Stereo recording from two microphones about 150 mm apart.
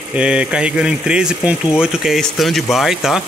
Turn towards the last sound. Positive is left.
turn(degrees=0)  # may be behind; listen again after turning